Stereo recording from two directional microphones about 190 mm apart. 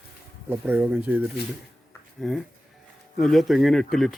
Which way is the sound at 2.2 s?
Centre (ahead or behind).